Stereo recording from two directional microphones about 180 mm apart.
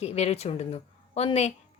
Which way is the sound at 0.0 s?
35° left (ahead or behind).